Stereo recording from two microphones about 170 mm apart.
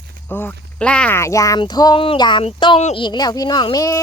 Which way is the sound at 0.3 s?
10° left (ahead or behind).